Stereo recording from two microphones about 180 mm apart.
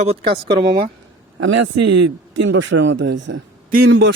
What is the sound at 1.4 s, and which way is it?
Speech, 90° right.